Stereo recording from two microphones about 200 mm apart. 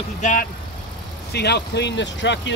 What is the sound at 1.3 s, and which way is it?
Speech, 55° left (ahead or behind).